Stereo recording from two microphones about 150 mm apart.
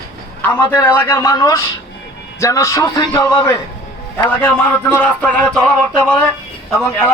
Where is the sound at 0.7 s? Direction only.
15° left (ahead or behind).